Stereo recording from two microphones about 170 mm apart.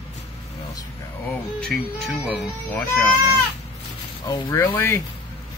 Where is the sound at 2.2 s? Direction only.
5° right (ahead or behind).